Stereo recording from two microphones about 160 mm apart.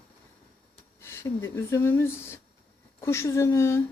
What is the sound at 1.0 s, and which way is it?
Speech, 15° left (ahead or behind).